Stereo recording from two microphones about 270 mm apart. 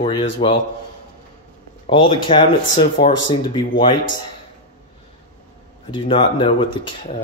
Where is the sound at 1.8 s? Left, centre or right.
Centre.